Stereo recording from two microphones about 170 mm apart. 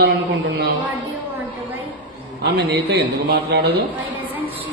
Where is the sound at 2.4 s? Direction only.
75° right (ahead or behind).